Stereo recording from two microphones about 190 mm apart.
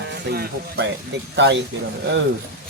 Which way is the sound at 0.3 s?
60° right (ahead or behind).